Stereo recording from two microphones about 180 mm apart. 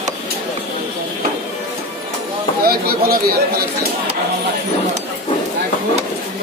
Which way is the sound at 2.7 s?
55° right (ahead or behind).